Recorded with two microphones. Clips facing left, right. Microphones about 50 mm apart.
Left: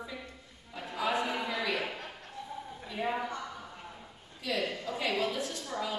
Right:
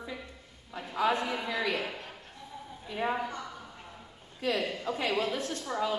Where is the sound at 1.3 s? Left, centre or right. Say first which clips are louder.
Right 1 dB; centre.